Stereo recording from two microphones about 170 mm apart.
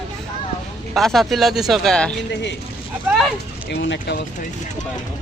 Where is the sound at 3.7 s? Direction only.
85° left.